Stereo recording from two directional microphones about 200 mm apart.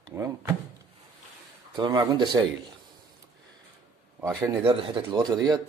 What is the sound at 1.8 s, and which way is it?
Speech, 25° right (ahead or behind).